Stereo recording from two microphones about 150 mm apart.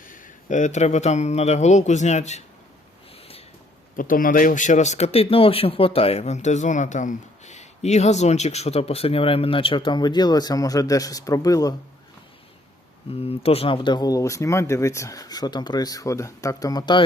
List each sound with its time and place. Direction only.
0.0 s speech: 65° left (ahead or behind)
3.9 s speech: 65° left (ahead or behind); by 11.7 s 25° left (ahead or behind)
13.1 s speech: 40° left (ahead or behind)